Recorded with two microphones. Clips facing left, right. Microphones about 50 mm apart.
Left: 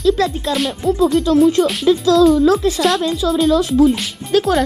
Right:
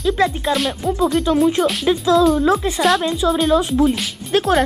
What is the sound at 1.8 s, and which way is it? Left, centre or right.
Speech, right.